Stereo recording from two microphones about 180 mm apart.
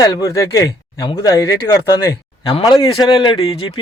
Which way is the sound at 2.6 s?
25° left (ahead or behind).